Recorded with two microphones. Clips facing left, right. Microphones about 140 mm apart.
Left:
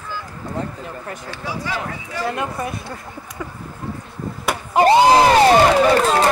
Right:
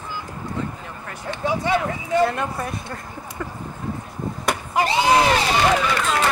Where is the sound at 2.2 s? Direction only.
5° left (ahead or behind).